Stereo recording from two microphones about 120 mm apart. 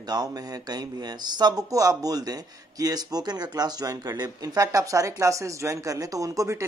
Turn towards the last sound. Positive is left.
turn(degrees=-25)  # may be behind; listen again after turning